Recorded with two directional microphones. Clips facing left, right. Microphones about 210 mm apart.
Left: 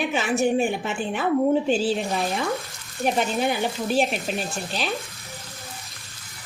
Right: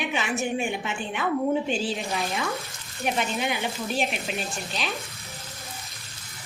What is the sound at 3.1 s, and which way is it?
Speech, 35° left (ahead or behind).